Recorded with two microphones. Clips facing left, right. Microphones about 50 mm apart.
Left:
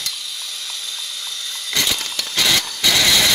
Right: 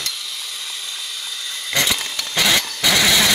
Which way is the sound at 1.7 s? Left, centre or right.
Right.